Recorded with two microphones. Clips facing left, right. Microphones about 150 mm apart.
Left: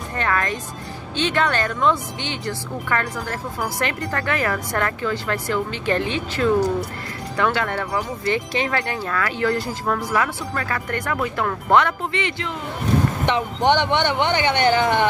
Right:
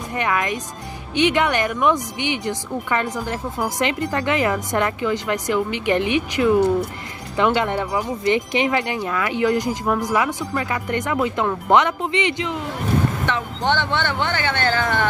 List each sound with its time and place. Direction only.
0.1 s speech: 15° right (ahead or behind)
13.2 s speech: 20° left (ahead or behind)